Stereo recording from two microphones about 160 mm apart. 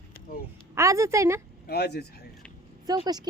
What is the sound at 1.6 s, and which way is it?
Speech, 90° left.